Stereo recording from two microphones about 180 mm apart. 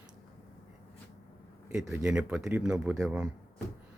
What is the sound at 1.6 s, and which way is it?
Speech, 15° right (ahead or behind).